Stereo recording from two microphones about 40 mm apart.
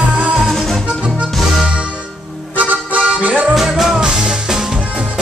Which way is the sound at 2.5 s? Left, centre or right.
Right.